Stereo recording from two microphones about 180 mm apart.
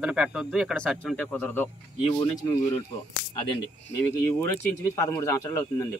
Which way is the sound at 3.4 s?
30° left (ahead or behind).